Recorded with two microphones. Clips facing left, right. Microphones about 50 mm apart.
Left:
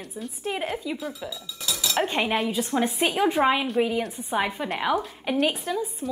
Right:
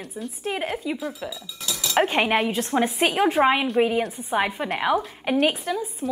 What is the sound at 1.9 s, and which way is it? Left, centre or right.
Speech, centre.